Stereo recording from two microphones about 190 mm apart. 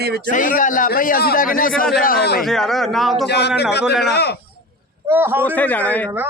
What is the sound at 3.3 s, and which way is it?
Speech, 60° left (ahead or behind).